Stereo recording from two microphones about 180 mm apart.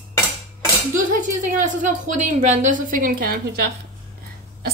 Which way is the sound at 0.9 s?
45° right (ahead or behind).